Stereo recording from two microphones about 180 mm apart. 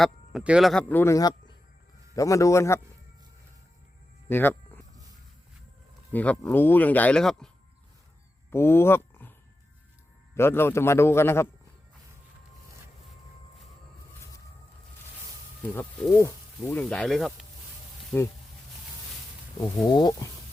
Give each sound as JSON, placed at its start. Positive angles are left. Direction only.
{"t": 0.0, "sound": "speech", "side_deg": -5}
{"t": 4.3, "sound": "speech", "side_deg": 10}
{"t": 6.1, "sound": "speech", "side_deg": 10}
{"t": 10.3, "sound": "speech", "side_deg": 15}
{"t": 15.6, "sound": "speech", "side_deg": 10}
{"t": 18.1, "sound": "speech", "side_deg": 10}
{"t": 19.9, "sound": "speech", "side_deg": 25}